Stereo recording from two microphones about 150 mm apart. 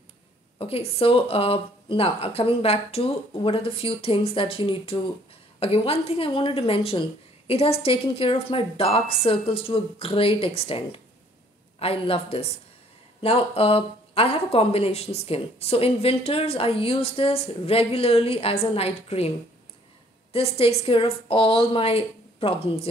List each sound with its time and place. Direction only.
0.6 s speech: 40° left (ahead or behind)
20.3 s speech: 40° left (ahead or behind)